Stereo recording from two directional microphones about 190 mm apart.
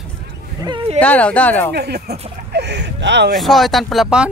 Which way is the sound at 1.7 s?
60° right (ahead or behind).